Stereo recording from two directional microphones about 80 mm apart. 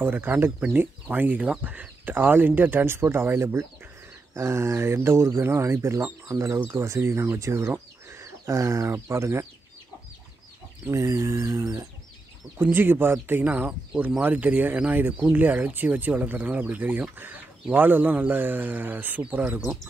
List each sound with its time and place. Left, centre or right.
0.0 s speech: right
10.9 s speech: right
12.7 s speech: right